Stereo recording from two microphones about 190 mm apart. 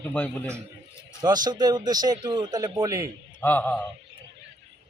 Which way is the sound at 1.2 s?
20° right (ahead or behind).